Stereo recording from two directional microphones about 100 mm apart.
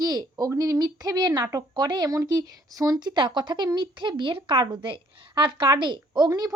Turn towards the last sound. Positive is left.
turn(degrees=-40)  # may be behind; listen again after turning